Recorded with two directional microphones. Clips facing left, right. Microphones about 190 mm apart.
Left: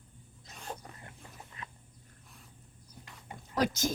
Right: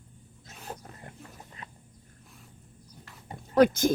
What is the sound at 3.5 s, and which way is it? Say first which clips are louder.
Speech: right 10 dB; 55° right (ahead or behind).